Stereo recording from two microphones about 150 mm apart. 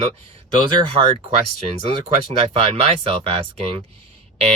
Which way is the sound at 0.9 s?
40° right (ahead or behind).